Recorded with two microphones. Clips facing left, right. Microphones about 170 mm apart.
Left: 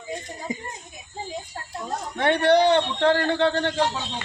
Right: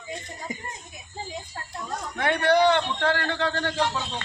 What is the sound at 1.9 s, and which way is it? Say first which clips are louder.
Speech: left 4 dB; 30° left (ahead or behind).